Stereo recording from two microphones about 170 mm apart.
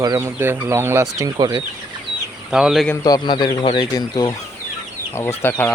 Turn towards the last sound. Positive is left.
turn(degrees=10)  # may be behind; listen again after turning